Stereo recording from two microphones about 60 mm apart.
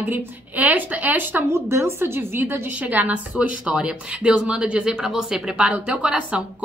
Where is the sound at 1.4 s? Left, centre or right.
Right.